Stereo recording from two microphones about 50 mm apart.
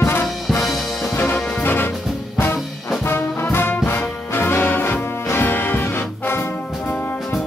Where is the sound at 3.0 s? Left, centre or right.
Left.